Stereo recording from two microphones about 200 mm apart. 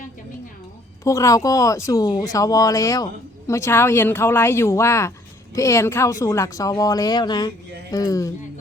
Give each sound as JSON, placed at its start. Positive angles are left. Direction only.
{"t": 1.0, "sound": "speech", "side_deg": 15}